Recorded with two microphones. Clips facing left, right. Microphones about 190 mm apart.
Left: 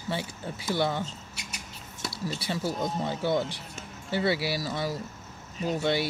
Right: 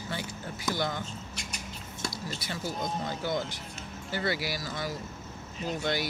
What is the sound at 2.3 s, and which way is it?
Speech, 30° left (ahead or behind).